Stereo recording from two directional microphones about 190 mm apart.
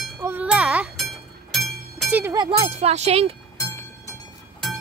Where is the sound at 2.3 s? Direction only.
30° right (ahead or behind).